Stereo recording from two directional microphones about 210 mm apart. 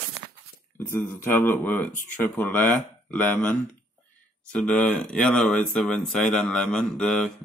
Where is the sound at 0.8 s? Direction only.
10° left (ahead or behind).